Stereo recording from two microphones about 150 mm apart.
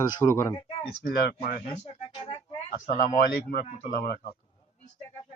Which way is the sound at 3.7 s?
55° left (ahead or behind).